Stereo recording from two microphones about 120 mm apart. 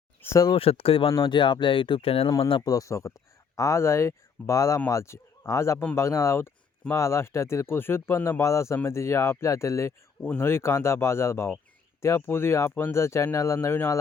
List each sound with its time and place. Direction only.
0.2 s speech: 30° left (ahead or behind)
0.5 s speech: 55° left (ahead or behind)
2.5 s speech: 35° left (ahead or behind)